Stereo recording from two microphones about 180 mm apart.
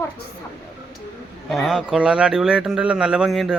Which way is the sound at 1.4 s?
Centre (ahead or behind).